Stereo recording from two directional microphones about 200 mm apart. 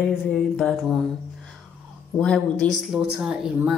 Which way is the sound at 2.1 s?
5° left (ahead or behind).